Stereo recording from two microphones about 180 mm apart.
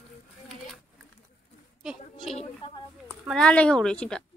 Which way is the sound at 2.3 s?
30° left (ahead or behind).